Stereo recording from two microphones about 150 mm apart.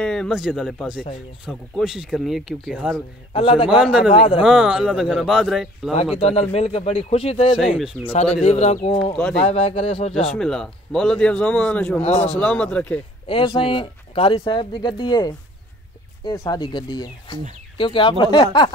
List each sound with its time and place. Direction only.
0.0 s a man's voice: 5° left (ahead or behind)
3.3 s speech: 40° left (ahead or behind)
3.7 s a man's voice: 5° right (ahead or behind)
6.1 s speech: 40° left (ahead or behind)
7.5 s a man's voice: centre (ahead or behind)
8.4 s speech: 50° left (ahead or behind)
9.1 s a man's voice: 5° left (ahead or behind)
9.4 s speech: 45° left (ahead or behind)
10.3 s a man's voice: 5° left (ahead or behind)
13.3 s speech: 35° left (ahead or behind)